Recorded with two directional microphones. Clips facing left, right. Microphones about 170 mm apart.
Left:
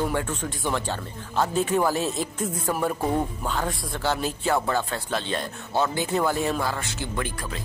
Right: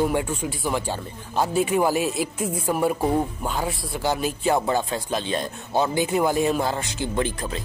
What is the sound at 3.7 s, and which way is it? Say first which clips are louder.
Speech: right 2 dB; centre (ahead or behind).